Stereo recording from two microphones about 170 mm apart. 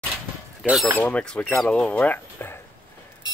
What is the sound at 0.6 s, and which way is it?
Speech, 5° right (ahead or behind).